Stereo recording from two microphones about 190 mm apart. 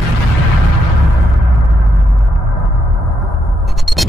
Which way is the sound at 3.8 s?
Centre (ahead or behind).